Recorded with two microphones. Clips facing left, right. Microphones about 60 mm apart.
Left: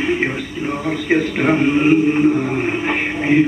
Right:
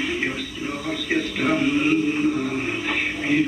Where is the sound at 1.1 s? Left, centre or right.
Left.